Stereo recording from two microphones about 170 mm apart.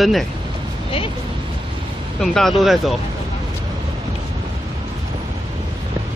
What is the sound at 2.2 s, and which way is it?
Speech, 5° left (ahead or behind).